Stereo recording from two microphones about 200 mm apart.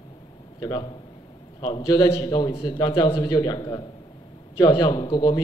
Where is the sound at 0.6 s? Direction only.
20° left (ahead or behind).